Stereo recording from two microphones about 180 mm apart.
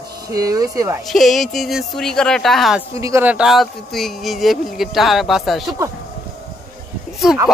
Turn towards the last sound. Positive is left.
turn(degrees=0)  # may be behind; listen again after turning